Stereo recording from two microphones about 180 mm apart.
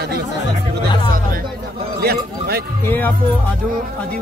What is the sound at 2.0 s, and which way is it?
Speech, 60° right (ahead or behind).